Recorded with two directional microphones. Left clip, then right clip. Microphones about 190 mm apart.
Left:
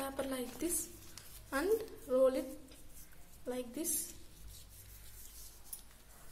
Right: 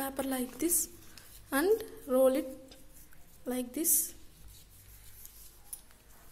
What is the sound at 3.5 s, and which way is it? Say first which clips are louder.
Speech: right 6 dB; 45° right (ahead or behind).